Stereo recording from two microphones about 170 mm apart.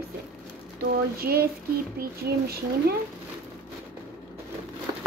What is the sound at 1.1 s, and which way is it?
Speech, 65° right (ahead or behind).